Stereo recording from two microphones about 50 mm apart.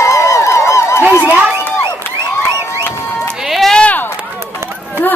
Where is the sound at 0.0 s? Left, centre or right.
Left.